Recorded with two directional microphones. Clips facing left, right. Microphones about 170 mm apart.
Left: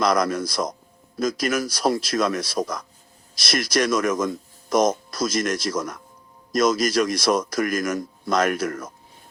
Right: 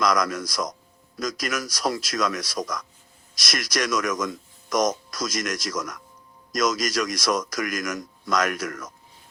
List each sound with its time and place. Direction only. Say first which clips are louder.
0.0 s speech: left 3 dB; 30° left (ahead or behind)